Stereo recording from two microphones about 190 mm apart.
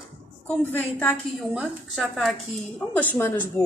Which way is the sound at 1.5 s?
Centre (ahead or behind).